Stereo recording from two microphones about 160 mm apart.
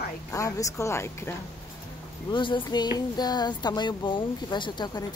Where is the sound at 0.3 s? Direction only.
20° left (ahead or behind).